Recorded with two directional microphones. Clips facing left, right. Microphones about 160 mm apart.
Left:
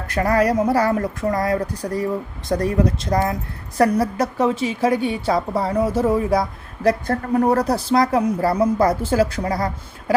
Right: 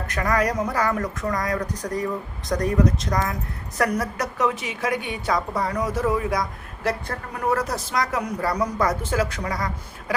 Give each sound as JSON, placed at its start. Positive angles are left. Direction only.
{"t": 0.1, "sound": "a woman's voice", "side_deg": 30}